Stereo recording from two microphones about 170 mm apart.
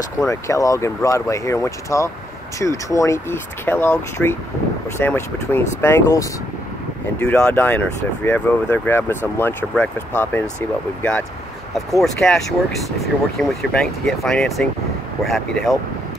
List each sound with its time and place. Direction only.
0.2 s speech: 20° left (ahead or behind); by 15.8 s centre (ahead or behind)